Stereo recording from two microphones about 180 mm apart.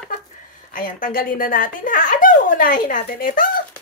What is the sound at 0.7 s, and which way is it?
Speech, 50° left (ahead or behind).